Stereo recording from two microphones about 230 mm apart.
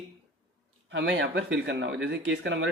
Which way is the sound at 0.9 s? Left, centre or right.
Right.